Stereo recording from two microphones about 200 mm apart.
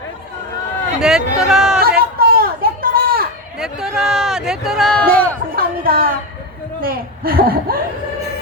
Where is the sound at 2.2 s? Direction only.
45° right (ahead or behind).